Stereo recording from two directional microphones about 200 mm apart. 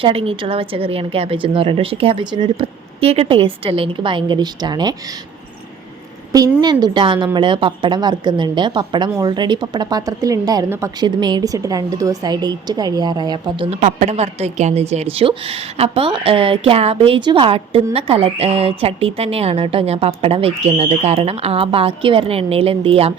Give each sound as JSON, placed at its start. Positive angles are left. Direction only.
{"t": 0.0, "sound": "a woman's voice", "side_deg": -30}
{"t": 6.3, "sound": "a woman's voice", "side_deg": -20}